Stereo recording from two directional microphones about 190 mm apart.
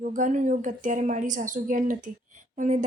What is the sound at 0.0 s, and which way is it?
A woman's voice, 45° right (ahead or behind).